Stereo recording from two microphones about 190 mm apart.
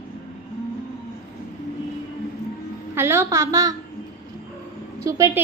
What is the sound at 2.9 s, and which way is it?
Speech, 10° right (ahead or behind).